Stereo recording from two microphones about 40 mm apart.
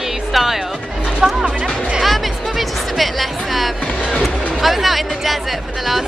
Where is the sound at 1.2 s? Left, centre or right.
Centre.